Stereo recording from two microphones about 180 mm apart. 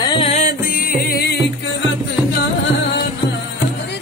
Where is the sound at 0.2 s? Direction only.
40° left (ahead or behind).